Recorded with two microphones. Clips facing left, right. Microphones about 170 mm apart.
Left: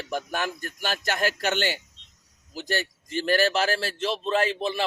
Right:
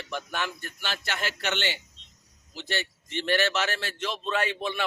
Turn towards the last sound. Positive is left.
turn(degrees=30)  # may be behind; listen again after turning